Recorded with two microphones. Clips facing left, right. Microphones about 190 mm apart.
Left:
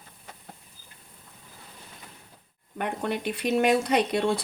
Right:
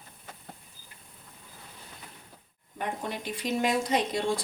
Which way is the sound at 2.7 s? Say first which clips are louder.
Left 5 dB; 65° left (ahead or behind).